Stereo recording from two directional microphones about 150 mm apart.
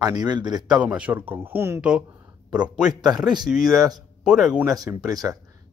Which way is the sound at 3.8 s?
25° right (ahead or behind).